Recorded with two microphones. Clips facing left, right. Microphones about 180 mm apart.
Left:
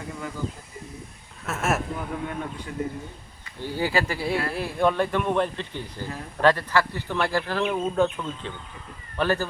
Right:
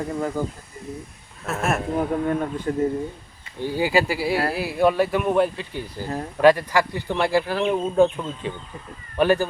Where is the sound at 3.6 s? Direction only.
15° right (ahead or behind).